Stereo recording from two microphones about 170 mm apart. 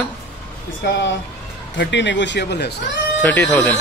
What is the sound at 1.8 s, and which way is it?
Speech, 90° left.